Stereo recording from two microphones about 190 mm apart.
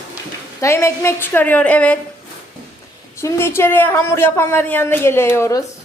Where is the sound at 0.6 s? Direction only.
15° left (ahead or behind).